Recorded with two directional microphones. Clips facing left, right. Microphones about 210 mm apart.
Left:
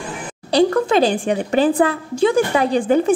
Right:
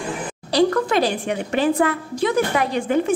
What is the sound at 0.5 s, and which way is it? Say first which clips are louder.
A woman's voice: left 3 dB; 25° left (ahead or behind).